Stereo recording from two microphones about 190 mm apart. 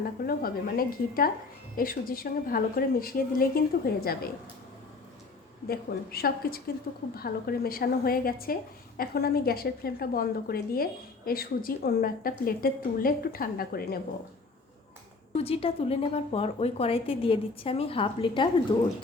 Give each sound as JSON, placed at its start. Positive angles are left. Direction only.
{"t": 0.3, "sound": "a woman's voice", "side_deg": 50}
{"t": 5.6, "sound": "a woman's voice", "side_deg": 55}
{"t": 15.3, "sound": "a woman's voice", "side_deg": 30}